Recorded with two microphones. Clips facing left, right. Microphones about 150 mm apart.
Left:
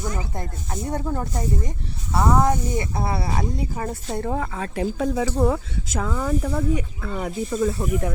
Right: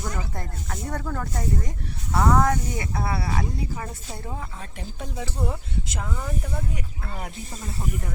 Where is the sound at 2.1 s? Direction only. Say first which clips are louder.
Left 1 dB; 5° left (ahead or behind).